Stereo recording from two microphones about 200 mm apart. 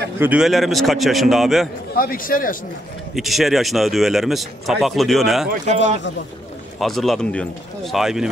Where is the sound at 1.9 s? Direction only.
45° left (ahead or behind).